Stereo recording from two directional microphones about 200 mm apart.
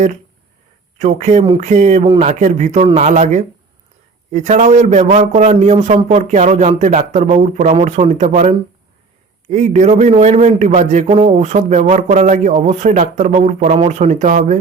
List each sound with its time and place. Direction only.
0.9 s a man's voice: 35° right (ahead or behind)